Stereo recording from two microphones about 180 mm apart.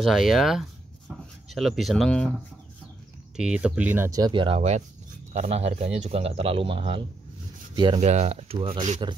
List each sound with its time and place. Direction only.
0.0 s speech: centre (ahead or behind)
3.3 s speech: 5° right (ahead or behind); by 4.6 s 30° right (ahead or behind)
4.6 s a man's voice: 40° right (ahead or behind)
8.0 s a man's voice: 40° right (ahead or behind)